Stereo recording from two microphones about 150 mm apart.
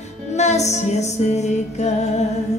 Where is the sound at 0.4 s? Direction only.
50° left (ahead or behind).